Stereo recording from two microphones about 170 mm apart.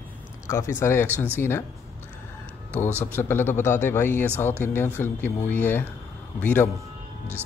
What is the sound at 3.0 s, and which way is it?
A man's voice, 15° left (ahead or behind).